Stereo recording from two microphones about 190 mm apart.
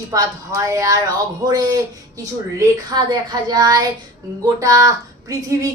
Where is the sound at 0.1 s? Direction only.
20° right (ahead or behind).